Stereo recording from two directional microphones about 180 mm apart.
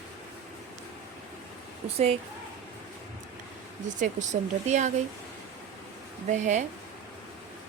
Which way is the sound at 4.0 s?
40° right (ahead or behind).